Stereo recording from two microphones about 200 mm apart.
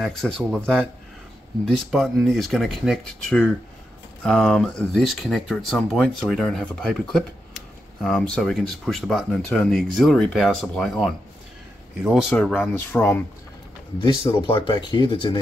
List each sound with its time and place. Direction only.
0.0 s speech: 5° left (ahead or behind)
1.9 s speech: centre (ahead or behind)
14.0 s speech: 25° left (ahead or behind)